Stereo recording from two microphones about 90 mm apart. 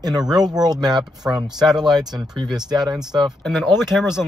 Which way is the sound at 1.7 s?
50° right (ahead or behind).